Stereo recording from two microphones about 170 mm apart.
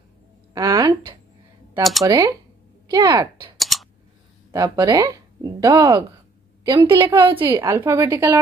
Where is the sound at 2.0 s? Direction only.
20° right (ahead or behind).